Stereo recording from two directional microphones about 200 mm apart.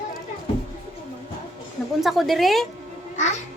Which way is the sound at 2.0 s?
Centre (ahead or behind).